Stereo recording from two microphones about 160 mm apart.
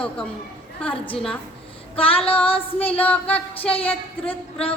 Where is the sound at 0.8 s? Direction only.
10° left (ahead or behind).